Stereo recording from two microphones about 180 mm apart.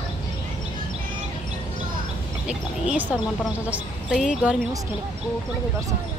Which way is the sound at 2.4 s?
5° right (ahead or behind).